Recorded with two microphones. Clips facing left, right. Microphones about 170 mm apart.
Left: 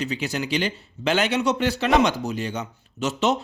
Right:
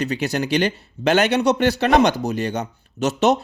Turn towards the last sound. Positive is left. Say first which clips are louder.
# right 5 dB
turn(degrees=-70)  # may be behind; listen again after turning